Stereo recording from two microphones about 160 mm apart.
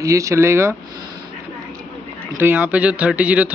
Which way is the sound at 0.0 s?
20° right (ahead or behind).